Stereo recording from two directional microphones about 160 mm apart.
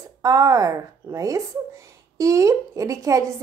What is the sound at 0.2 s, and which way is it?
A woman's voice, 20° right (ahead or behind).